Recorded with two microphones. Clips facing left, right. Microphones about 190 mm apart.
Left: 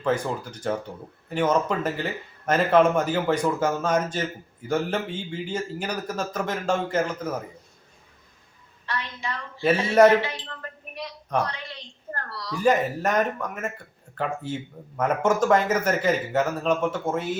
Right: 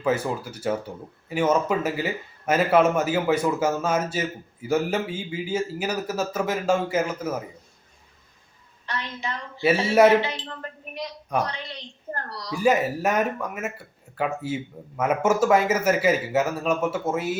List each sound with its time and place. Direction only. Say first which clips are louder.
0.0 s speech: right 1 dB; 5° right (ahead or behind)
8.9 s speech: even; 20° right (ahead or behind)
9.6 s speech: even; 10° right (ahead or behind)
10.2 s speech: right 2 dB; 20° right (ahead or behind)
11.3 s speech: even; 10° right (ahead or behind)